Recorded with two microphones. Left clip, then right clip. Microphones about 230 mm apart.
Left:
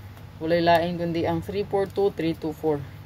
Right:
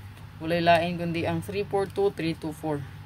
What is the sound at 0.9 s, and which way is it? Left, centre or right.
Speech, right.